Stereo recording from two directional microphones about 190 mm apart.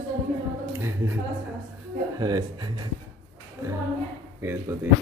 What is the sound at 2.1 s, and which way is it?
Speech, 20° right (ahead or behind).